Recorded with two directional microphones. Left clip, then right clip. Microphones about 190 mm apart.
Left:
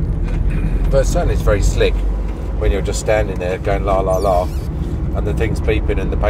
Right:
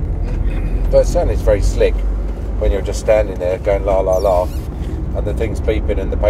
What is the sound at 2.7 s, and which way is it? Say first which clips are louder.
Speech: right 3 dB; 10° left (ahead or behind).